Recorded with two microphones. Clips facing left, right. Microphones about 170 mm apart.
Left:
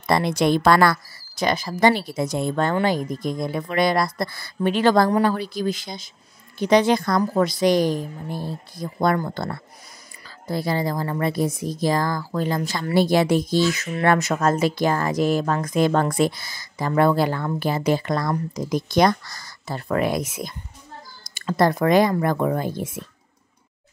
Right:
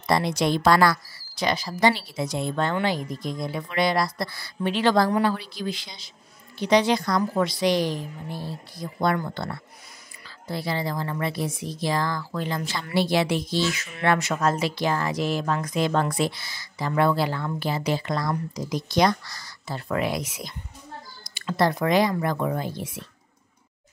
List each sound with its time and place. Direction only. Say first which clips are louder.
0.0 s a woman's voice: left 3 dB; 55° left (ahead or behind)